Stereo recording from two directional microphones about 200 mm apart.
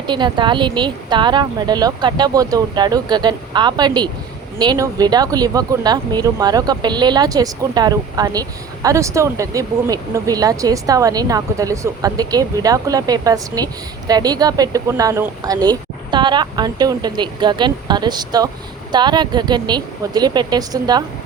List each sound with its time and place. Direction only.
0.1 s speech: 25° right (ahead or behind)